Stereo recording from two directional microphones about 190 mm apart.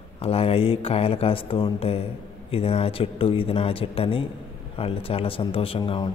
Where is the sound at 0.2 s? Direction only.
30° left (ahead or behind).